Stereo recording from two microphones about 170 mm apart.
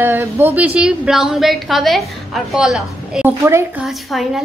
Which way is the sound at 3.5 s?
15° right (ahead or behind).